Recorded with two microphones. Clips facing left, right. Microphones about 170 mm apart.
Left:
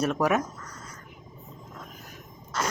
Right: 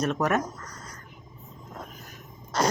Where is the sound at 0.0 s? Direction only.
10° left (ahead or behind).